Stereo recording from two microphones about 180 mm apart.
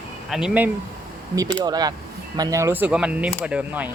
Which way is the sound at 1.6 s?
20° right (ahead or behind).